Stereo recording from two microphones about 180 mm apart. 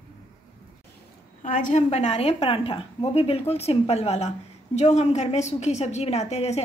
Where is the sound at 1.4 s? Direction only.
45° left (ahead or behind).